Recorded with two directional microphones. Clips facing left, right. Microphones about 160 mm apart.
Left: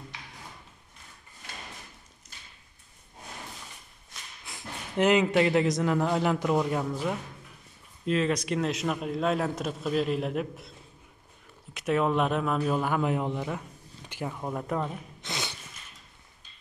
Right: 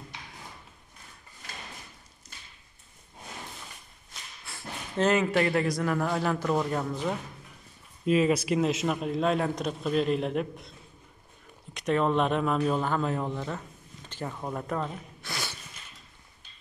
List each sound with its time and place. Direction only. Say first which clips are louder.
4.5 s speech: right 1 dB; 15° left (ahead or behind)
8.0 s speech: right 3 dB; 10° right (ahead or behind)
11.7 s speech: even; 5° left (ahead or behind)
15.2 s a sound: left 1 dB; 20° left (ahead or behind)